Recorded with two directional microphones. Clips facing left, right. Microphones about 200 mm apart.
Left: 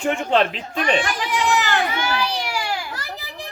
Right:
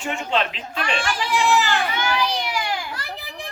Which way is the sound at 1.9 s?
5° left (ahead or behind).